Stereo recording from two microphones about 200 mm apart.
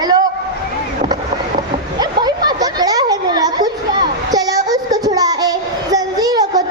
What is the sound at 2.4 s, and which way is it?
Children playing, 20° right (ahead or behind).